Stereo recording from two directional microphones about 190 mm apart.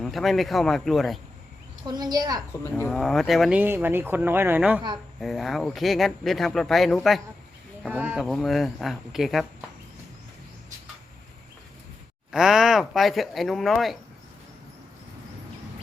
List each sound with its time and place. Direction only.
0.0 s speech: centre (ahead or behind)
1.9 s a woman's voice: 20° right (ahead or behind)
2.5 s speech: 10° left (ahead or behind)
2.9 s speech: centre (ahead or behind)
12.3 s speech: centre (ahead or behind)